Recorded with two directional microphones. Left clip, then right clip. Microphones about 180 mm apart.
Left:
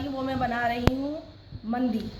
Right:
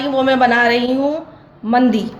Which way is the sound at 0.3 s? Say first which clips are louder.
Right 14 dB; 35° right (ahead or behind).